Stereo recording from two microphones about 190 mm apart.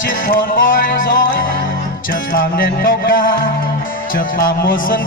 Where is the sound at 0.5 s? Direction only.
45° left (ahead or behind).